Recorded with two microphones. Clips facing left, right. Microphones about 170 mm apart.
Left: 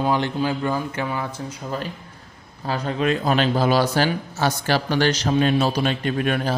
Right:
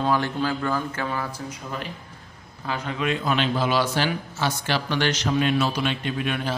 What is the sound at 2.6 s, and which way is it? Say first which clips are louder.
A man's voice: left 4 dB; 35° left (ahead or behind).